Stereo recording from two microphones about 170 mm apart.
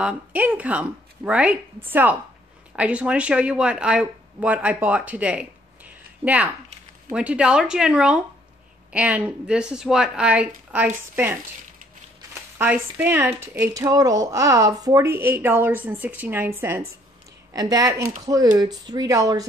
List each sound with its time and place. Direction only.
0.0 s speech: 10° right (ahead or behind)
12.5 s speech: 10° right (ahead or behind)